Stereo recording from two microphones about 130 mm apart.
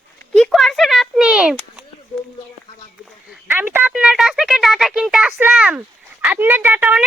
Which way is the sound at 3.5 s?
15° right (ahead or behind).